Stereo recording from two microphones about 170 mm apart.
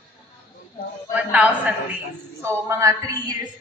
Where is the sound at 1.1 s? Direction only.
10° right (ahead or behind).